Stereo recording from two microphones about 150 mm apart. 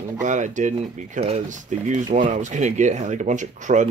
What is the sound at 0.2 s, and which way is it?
Speech, 55° right (ahead or behind).